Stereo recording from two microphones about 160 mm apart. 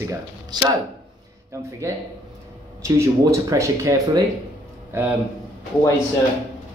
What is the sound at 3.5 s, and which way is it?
Speech, 20° right (ahead or behind).